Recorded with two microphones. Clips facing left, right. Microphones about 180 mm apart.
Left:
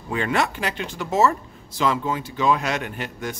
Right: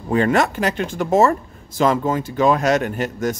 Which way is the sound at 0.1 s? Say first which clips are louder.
Right 6 dB; 45° right (ahead or behind).